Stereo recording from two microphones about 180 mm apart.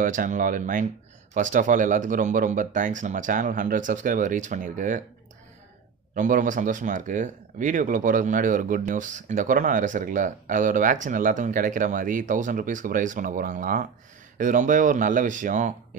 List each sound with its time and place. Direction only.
0.0 s speech: 45° right (ahead or behind)
6.1 s speech: 45° right (ahead or behind)